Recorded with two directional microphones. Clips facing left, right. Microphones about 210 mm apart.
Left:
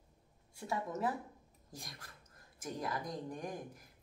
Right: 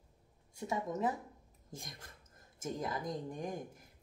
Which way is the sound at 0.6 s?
20° right (ahead or behind).